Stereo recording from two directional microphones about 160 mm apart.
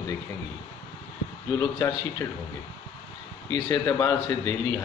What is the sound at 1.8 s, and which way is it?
Speech, 15° left (ahead or behind).